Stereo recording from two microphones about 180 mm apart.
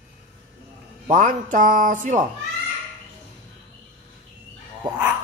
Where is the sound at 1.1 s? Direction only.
45° right (ahead or behind).